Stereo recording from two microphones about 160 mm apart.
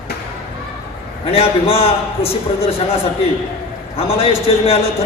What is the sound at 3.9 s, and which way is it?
Speech, 35° left (ahead or behind).